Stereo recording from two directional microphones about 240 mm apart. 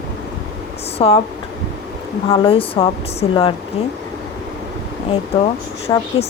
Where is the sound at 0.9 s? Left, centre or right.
Left.